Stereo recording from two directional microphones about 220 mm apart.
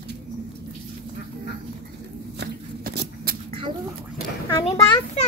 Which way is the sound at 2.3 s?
50° right (ahead or behind).